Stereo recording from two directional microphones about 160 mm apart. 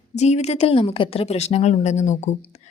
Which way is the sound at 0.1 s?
45° left (ahead or behind).